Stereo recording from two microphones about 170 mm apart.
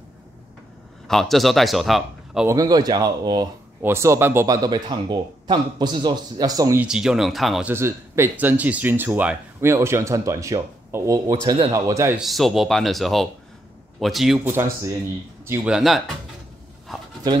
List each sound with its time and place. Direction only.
1.0 s speech: centre (ahead or behind)
2.4 s a man's voice: 20° right (ahead or behind)
4.6 s a man's voice: 25° right (ahead or behind)
6.8 s speech: 5° right (ahead or behind)
7.7 s speech: 15° right (ahead or behind)
11.4 s a man's voice: 35° right (ahead or behind)
11.7 s speech: 20° right (ahead or behind)
12.2 s a man's voice: centre (ahead or behind)
14.4 s speech: 15° right (ahead or behind)
15.7 s speech: centre (ahead or behind)